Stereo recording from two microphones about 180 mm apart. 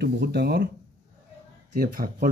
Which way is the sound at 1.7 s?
55° right (ahead or behind).